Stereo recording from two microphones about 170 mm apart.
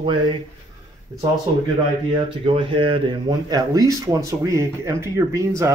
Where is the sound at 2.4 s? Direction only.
30° right (ahead or behind).